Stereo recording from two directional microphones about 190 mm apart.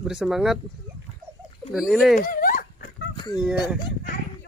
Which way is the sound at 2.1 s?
45° left (ahead or behind).